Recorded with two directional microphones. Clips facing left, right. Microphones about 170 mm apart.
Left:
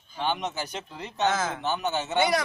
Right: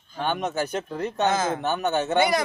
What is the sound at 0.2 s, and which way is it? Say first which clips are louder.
Speech: right 3 dB; 50° right (ahead or behind).